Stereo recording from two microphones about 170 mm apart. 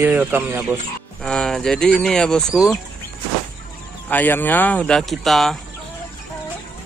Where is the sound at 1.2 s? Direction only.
5° left (ahead or behind).